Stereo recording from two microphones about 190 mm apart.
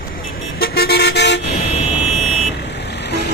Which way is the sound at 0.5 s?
55° left (ahead or behind).